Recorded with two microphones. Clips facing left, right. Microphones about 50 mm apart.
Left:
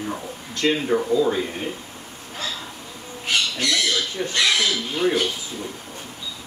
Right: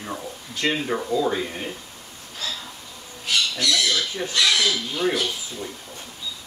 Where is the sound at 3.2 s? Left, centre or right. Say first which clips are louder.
Left 1 dB; left.